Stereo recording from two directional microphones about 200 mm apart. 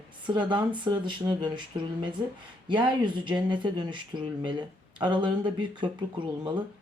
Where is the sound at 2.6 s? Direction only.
25° right (ahead or behind).